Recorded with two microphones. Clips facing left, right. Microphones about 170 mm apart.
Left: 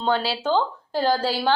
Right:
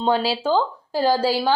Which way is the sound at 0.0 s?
5° right (ahead or behind).